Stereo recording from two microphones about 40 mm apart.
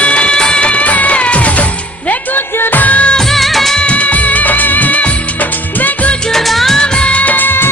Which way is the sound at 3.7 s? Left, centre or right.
Left.